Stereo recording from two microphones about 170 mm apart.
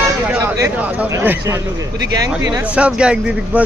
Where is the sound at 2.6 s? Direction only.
5° right (ahead or behind).